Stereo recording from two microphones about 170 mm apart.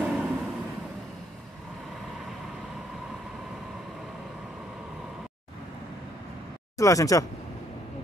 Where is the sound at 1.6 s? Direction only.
Centre (ahead or behind).